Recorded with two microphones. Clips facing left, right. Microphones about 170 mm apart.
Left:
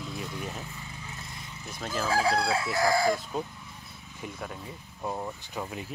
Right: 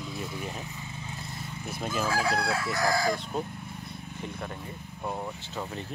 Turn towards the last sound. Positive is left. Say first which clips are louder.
# even
turn(degrees=0)  # may be behind; listen again after turning